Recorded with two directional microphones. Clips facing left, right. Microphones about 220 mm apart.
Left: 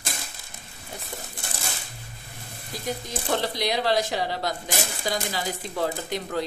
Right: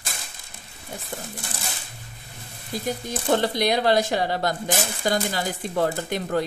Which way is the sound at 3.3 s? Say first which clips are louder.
Right 5 dB; 55° right (ahead or behind).